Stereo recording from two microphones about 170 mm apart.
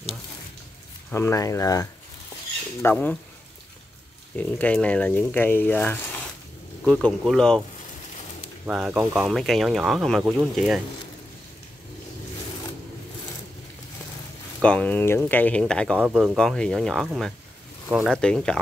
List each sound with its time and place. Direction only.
1.1 s speech: 15° left (ahead or behind)
4.4 s speech: 10° left (ahead or behind)
8.6 s speech: 5° right (ahead or behind)
14.6 s speech: 5° left (ahead or behind)
16.0 s speech: 5° right (ahead or behind)